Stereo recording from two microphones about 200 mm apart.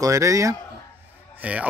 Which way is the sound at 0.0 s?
15° right (ahead or behind).